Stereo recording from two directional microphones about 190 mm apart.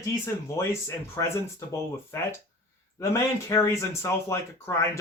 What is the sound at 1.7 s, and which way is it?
Speech, 15° left (ahead or behind).